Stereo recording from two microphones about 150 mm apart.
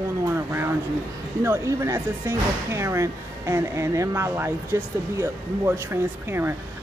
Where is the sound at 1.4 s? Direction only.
15° right (ahead or behind).